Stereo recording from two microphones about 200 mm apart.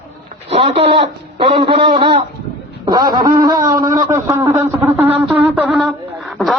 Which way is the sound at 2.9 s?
20° right (ahead or behind).